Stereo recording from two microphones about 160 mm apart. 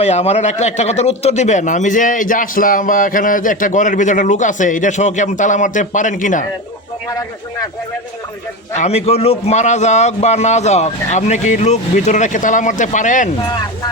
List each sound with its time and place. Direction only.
0.0 s a man's voice: 40° left (ahead or behind)
7.1 s speech: 20° left (ahead or behind)
8.7 s a man's voice: 45° left (ahead or behind)